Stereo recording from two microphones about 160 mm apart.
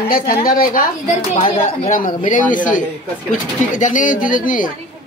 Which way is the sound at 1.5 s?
45° left (ahead or behind).